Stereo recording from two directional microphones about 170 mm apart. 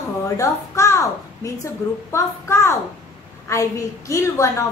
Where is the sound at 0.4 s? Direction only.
15° left (ahead or behind).